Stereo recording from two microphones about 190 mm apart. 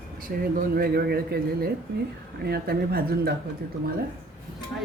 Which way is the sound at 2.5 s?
55° right (ahead or behind).